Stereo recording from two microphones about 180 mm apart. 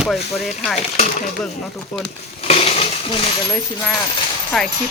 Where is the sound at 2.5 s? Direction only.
35° left (ahead or behind).